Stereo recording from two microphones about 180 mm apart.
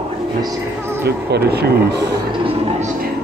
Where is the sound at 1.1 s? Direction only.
65° right (ahead or behind).